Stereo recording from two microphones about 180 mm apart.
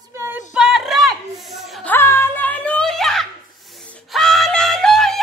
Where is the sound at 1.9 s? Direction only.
15° left (ahead or behind).